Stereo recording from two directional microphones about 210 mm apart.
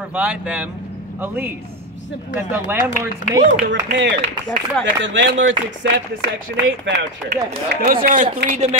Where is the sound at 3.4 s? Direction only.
55° right (ahead or behind); by 8.7 s 30° right (ahead or behind).